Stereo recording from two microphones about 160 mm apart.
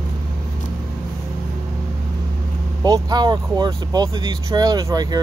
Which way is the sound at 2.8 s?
25° right (ahead or behind).